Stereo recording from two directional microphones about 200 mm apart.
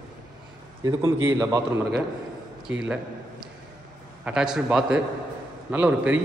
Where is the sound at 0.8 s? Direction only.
15° right (ahead or behind).